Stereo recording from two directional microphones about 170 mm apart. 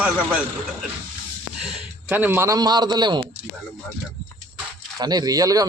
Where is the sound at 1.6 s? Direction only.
10° right (ahead or behind); by 3.2 s 25° right (ahead or behind).